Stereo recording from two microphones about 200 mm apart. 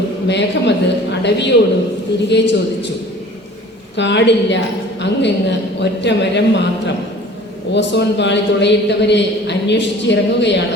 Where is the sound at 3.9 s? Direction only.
60° left (ahead or behind).